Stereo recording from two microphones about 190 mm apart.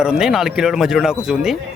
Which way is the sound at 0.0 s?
5° right (ahead or behind).